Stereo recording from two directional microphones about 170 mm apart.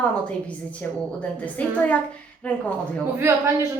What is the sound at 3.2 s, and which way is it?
Speech, 15° right (ahead or behind).